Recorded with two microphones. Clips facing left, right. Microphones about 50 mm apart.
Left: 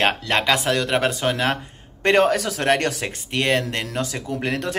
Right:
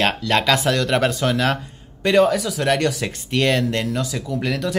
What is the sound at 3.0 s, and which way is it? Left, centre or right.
Speech, left.